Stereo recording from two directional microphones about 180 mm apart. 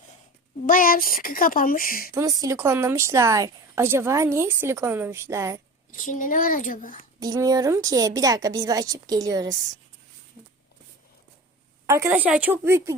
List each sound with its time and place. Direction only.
0.7 s speech: 50° left (ahead or behind)
2.1 s a woman's voice: 15° right (ahead or behind)
5.9 s speech: 45° left (ahead or behind)
7.2 s a woman's voice: 20° right (ahead or behind)
11.9 s a woman's voice: 15° right (ahead or behind)